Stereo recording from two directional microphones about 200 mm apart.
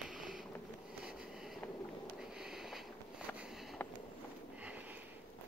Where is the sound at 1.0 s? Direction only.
5° right (ahead or behind).